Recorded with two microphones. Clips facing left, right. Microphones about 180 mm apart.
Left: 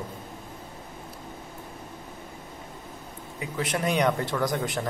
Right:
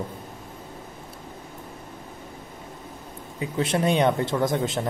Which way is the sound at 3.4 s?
25° right (ahead or behind).